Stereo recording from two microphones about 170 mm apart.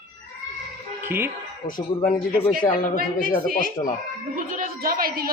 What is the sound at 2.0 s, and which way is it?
Speech, 55° left (ahead or behind).